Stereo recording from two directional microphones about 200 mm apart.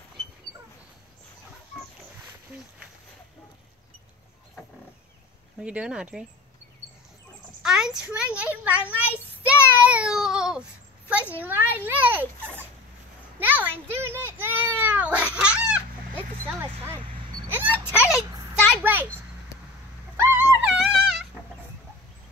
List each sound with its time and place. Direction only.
5.6 s speech: 5° right (ahead or behind)
7.6 s a child's voice: 5° right (ahead or behind)
9.5 s child singing: 5° right (ahead or behind)
11.1 s a child's voice: 5° right (ahead or behind)
13.4 s a sound: 10° right (ahead or behind)
17.5 s a sound: 10° right (ahead or behind)
17.7 s speech: 10° left (ahead or behind)
18.3 s a sound: 15° right (ahead or behind)
18.7 s a child's voice: 10° right (ahead or behind)
20.2 s music: 10° right (ahead or behind)